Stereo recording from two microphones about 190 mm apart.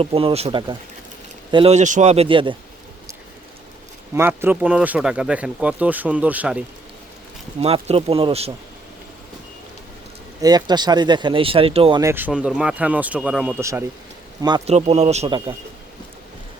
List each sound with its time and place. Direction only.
0.0 s speech: 30° right (ahead or behind)
4.1 s speech: 10° right (ahead or behind)
7.6 s speech: 30° right (ahead or behind)
10.4 s speech: 20° right (ahead or behind)
14.7 s speech: 35° right (ahead or behind)